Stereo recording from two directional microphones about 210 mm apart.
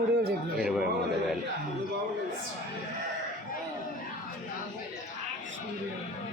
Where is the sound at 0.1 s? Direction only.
50° right (ahead or behind).